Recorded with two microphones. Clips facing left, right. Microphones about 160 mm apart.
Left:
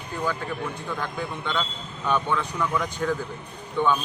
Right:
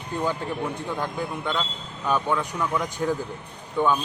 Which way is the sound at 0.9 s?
10° right (ahead or behind).